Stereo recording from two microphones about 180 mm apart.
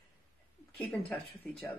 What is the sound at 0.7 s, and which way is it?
Speech, centre (ahead or behind).